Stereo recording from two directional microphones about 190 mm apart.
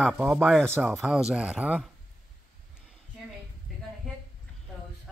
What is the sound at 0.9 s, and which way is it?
Speech, centre (ahead or behind).